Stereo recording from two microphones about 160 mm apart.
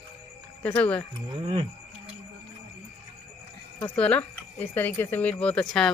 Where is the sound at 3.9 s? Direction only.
10° left (ahead or behind).